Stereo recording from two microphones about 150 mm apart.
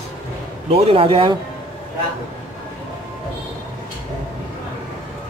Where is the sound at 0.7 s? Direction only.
40° right (ahead or behind).